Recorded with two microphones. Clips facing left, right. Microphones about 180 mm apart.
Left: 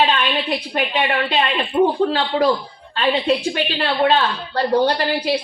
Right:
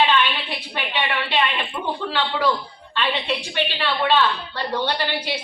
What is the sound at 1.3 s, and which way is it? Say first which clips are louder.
A woman's voice: left 3 dB; 40° left (ahead or behind).